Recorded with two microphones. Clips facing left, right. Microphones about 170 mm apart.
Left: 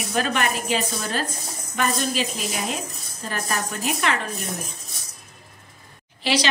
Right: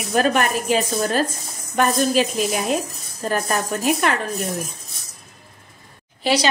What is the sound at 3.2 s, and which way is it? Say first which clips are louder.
Speech: right 6 dB; 45° right (ahead or behind).